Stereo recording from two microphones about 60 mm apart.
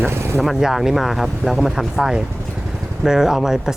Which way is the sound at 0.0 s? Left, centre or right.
Right.